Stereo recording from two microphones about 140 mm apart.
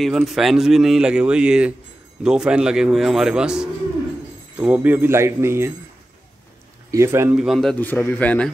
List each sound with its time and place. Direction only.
0.0 s speech: centre (ahead or behind); by 5.7 s 20° right (ahead or behind)
6.9 s speech: 20° right (ahead or behind)
7.3 s speech: centre (ahead or behind)
7.7 s a man's voice: 15° left (ahead or behind)